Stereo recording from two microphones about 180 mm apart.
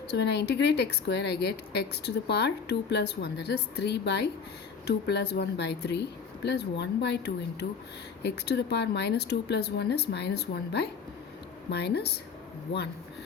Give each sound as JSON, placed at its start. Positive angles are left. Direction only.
{"t": 0.1, "sound": "a woman's voice", "side_deg": 70}